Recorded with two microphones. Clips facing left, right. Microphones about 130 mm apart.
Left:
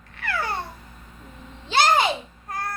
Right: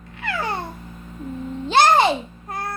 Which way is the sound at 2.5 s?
25° right (ahead or behind).